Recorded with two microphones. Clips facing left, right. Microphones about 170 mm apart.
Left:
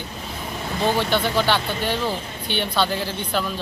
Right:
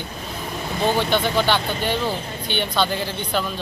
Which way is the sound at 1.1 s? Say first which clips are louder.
Right 1 dB; 5° left (ahead or behind).